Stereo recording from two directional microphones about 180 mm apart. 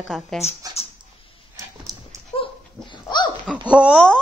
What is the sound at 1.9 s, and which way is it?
Dog, 20° right (ahead or behind).